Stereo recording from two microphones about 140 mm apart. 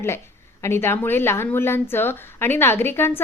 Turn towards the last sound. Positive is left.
turn(degrees=15)  # may be behind; listen again after turning